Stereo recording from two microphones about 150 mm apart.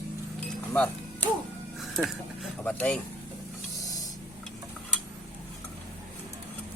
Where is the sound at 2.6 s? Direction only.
10° left (ahead or behind).